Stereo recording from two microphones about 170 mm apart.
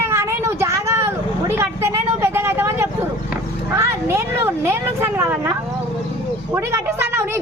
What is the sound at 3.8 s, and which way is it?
Speech, 15° right (ahead or behind).